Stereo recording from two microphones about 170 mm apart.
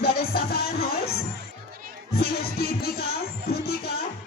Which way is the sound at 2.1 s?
65° left (ahead or behind).